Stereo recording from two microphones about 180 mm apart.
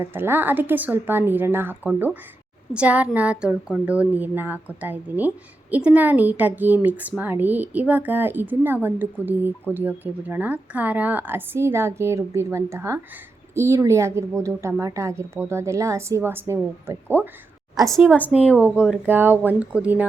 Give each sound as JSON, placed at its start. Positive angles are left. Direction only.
{"t": 0.0, "sound": "speech", "side_deg": -10}
{"t": 17.8, "sound": "a woman's voice", "side_deg": 5}
{"t": 18.5, "sound": "speech", "side_deg": -5}